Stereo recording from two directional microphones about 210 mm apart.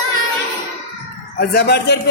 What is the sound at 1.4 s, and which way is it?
Speech, 50° left (ahead or behind).